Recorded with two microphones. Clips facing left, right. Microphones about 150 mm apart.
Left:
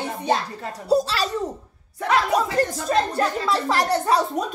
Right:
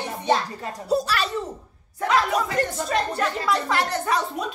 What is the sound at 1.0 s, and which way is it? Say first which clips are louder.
Speech: left 4 dB; 40° left (ahead or behind).